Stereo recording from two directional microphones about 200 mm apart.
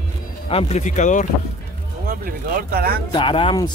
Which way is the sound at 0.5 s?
35° left (ahead or behind).